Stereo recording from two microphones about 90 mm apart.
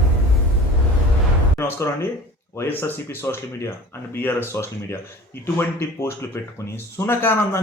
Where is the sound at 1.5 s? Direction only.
30° left (ahead or behind).